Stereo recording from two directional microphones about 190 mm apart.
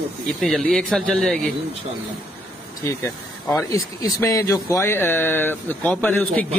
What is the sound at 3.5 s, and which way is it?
A man's voice, 15° left (ahead or behind).